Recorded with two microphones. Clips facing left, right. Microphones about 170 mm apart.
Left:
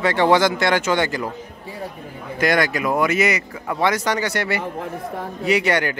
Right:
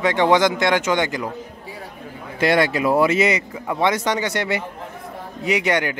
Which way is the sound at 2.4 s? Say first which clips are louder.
Right 2 dB; 30° right (ahead or behind).